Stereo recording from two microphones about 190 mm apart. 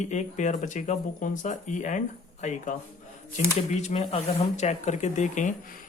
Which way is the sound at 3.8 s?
35° left (ahead or behind).